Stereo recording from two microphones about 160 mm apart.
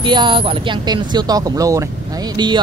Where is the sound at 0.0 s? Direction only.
30° right (ahead or behind).